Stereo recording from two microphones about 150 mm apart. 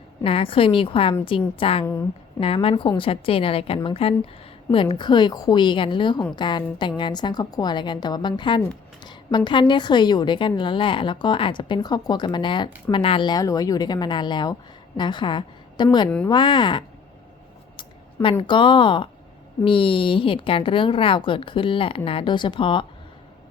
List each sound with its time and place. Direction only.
0.3 s a woman's voice: 40° left (ahead or behind)
1.8 s a woman's voice: 15° left (ahead or behind)
2.4 s a woman's voice: 40° left (ahead or behind)
16.0 s a woman's voice: 10° left (ahead or behind)
16.3 s a woman's voice: 30° left (ahead or behind)
17.7 s a sound: 35° left (ahead or behind)
18.4 s a woman's voice: 30° left (ahead or behind)